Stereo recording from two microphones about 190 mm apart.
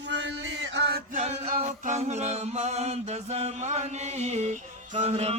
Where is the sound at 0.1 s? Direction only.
65° right (ahead or behind).